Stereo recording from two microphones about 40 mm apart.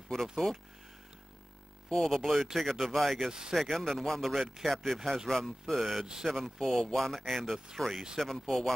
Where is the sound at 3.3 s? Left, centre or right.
Centre.